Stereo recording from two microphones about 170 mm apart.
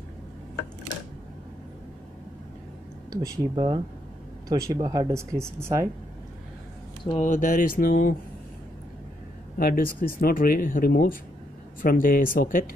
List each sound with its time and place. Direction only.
3.1 s speech: 25° right (ahead or behind)
7.2 s mantra: 50° left (ahead or behind)
9.6 s speech: 55° left (ahead or behind)